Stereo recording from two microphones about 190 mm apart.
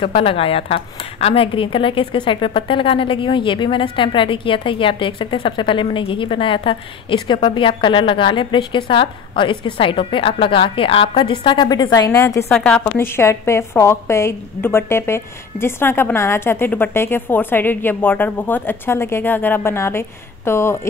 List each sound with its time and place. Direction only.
0.0 s a woman's voice: 30° left (ahead or behind)
12.4 s a woman's voice: 5° left (ahead or behind)